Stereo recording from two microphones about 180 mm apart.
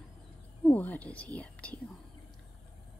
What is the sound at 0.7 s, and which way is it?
Speech, 10° left (ahead or behind).